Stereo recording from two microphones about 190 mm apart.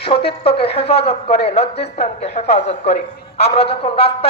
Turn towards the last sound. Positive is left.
turn(degrees=30)  # may be behind; listen again after turning